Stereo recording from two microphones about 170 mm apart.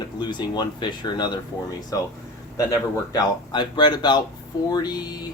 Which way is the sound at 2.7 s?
20° left (ahead or behind).